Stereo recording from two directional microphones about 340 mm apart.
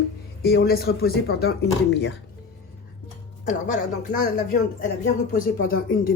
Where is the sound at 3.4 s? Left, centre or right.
Left.